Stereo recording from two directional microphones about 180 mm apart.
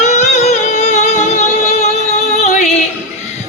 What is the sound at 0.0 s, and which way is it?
Music, 40° left (ahead or behind).